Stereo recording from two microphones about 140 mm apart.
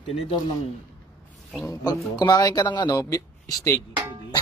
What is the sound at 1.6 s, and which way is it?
Speech, 25° left (ahead or behind).